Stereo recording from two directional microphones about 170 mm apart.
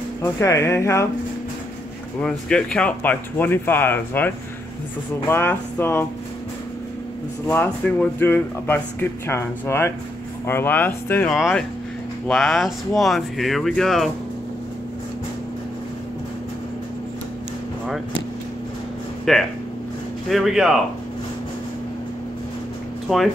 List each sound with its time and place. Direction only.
0.2 s speech: 20° left (ahead or behind)
2.2 s speech: 5° left (ahead or behind)
7.4 s speech: 10° left (ahead or behind)
11.2 s speech: centre (ahead or behind)
19.3 s speech: centre (ahead or behind)
23.0 s speech: centre (ahead or behind)